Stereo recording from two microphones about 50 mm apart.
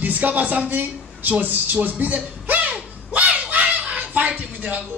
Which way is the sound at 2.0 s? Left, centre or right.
Right.